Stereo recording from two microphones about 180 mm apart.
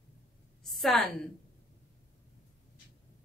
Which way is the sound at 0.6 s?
Centre (ahead or behind).